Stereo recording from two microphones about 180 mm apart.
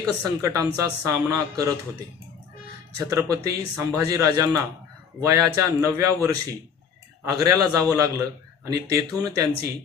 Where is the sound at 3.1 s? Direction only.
20° right (ahead or behind).